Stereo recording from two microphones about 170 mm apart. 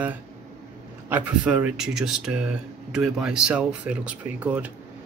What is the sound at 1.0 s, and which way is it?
Speech, 10° right (ahead or behind).